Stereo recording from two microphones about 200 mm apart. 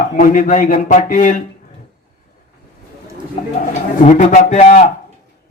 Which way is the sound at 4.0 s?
40° left (ahead or behind).